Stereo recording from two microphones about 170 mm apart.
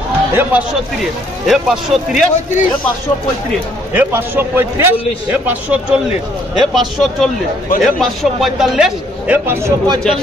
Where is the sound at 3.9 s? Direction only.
15° right (ahead or behind).